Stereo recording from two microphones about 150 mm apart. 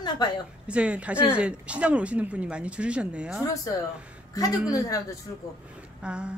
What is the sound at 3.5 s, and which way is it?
Speech, 25° left (ahead or behind).